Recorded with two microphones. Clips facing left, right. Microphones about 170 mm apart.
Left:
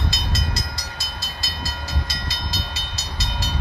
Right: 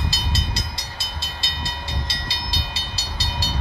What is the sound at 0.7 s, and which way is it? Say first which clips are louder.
Train: even; 30° right (ahead or behind).